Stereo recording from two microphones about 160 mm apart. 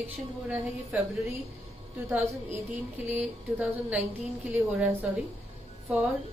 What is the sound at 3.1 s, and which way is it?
Speech, 10° right (ahead or behind).